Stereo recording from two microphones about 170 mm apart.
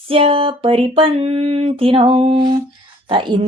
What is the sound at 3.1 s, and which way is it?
Speech, 30° right (ahead or behind).